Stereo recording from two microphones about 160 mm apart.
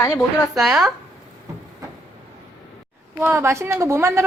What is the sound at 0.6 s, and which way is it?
Speech, 5° right (ahead or behind).